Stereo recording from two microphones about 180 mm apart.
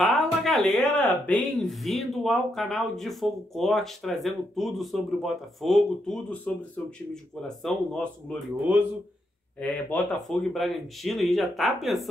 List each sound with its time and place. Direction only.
0.0 s speech: centre (ahead or behind)
8.7 s speech: 10° right (ahead or behind)
9.6 s speech: 10° left (ahead or behind)